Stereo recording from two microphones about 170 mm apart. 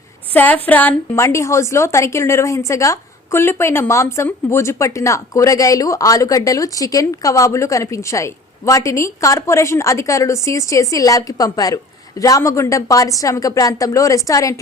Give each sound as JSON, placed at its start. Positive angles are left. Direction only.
{"t": 0.3, "sound": "a woman's voice", "side_deg": 10}